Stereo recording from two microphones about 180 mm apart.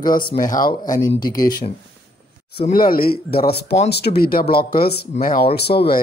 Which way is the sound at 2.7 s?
55° left (ahead or behind).